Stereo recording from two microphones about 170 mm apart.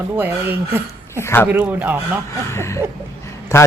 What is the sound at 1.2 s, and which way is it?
Speech, 10° left (ahead or behind).